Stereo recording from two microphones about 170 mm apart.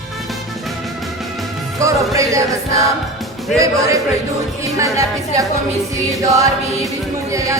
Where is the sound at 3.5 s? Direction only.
20° right (ahead or behind).